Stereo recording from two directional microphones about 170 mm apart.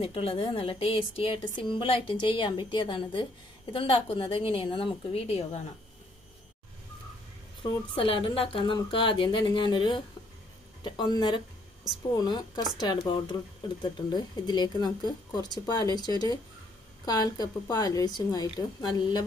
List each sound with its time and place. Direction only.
0.0 s a woman's voice: 35° left (ahead or behind)
7.6 s a woman's voice: 30° left (ahead or behind)